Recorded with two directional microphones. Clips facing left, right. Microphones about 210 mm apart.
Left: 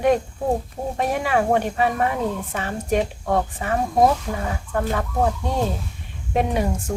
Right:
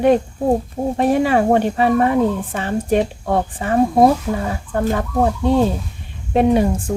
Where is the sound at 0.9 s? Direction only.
30° right (ahead or behind).